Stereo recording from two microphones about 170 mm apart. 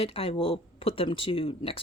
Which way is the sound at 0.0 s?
35° left (ahead or behind).